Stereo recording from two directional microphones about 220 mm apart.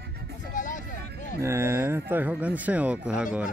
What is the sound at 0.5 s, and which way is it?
Vehicle, 35° left (ahead or behind).